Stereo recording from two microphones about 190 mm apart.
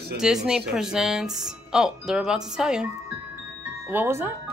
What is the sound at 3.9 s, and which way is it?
Speech, 10° right (ahead or behind).